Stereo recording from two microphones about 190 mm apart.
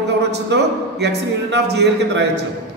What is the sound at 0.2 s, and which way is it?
Speech, 60° right (ahead or behind).